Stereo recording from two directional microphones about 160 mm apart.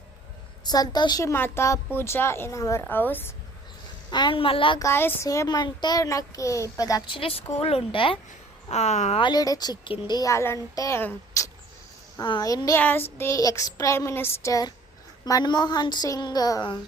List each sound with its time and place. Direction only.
0.6 s a woman's voice: 25° left (ahead or behind)
4.1 s speech: 30° left (ahead or behind)
4.8 s a child's voice: 15° left (ahead or behind)
7.2 s speech: 35° left (ahead or behind)
9.2 s a child's voice: 25° left (ahead or behind)